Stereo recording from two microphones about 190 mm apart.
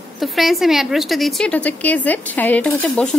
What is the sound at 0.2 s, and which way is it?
A woman's voice, centre (ahead or behind).